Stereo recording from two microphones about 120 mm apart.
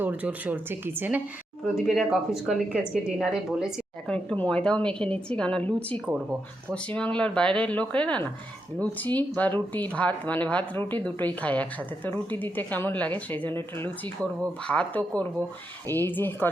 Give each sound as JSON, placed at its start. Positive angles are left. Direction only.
{"t": 0.0, "sound": "speech", "side_deg": -15}
{"t": 1.6, "sound": "a woman's voice", "side_deg": 0}
{"t": 4.0, "sound": "speech", "side_deg": 5}